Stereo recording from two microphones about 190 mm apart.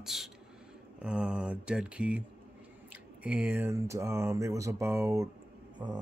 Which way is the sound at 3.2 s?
5° right (ahead or behind).